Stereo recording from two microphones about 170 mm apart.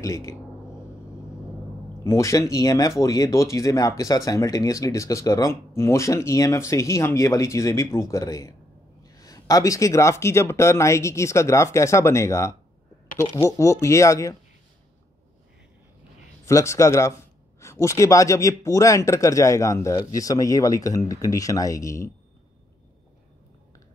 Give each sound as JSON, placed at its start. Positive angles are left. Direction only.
{"t": 0.0, "sound": "speech", "side_deg": 15}
{"t": 2.0, "sound": "speech", "side_deg": 15}
{"t": 16.4, "sound": "speech", "side_deg": 15}